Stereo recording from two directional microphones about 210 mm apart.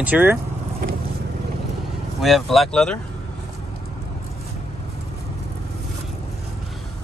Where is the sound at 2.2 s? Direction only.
Centre (ahead or behind).